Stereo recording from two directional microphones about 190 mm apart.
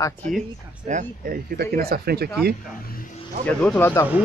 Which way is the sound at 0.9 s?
45° right (ahead or behind).